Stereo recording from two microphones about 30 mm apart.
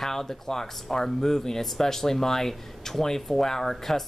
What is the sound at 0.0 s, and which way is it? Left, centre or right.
Speech, centre.